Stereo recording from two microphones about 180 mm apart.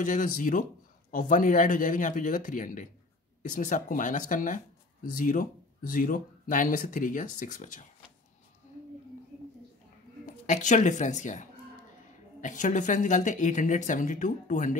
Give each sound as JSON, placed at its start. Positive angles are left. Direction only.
{"t": 0.0, "sound": "speech", "side_deg": 45}
{"t": 10.2, "sound": "speech", "side_deg": 45}